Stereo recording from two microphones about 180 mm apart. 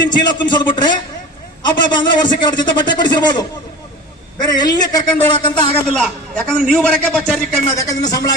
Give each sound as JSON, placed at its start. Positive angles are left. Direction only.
{"t": 0.0, "sound": "a man's voice", "side_deg": 25}
{"t": 5.5, "sound": "a man's voice", "side_deg": 5}
{"t": 7.8, "sound": "a man's voice", "side_deg": 20}